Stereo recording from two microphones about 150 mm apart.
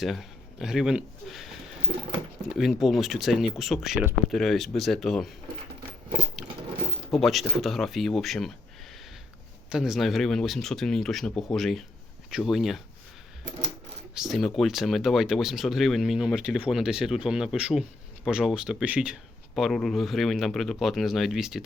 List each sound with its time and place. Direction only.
0.0 s speech: centre (ahead or behind)
2.5 s speech: centre (ahead or behind)
7.1 s speech: centre (ahead or behind)
9.6 s speech: 5° right (ahead or behind)
14.2 s speech: centre (ahead or behind)